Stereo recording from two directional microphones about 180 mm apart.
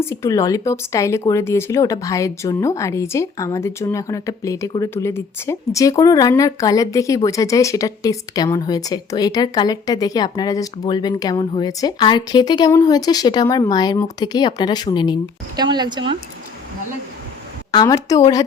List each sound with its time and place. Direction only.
0.0 s speech: 15° left (ahead or behind)
15.5 s speech: 25° right (ahead or behind)
17.7 s speech: 20° left (ahead or behind)